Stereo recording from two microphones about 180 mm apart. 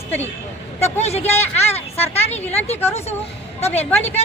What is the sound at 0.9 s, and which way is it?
Speech, 35° left (ahead or behind).